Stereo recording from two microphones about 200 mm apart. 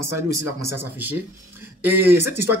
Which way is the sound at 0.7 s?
10° right (ahead or behind).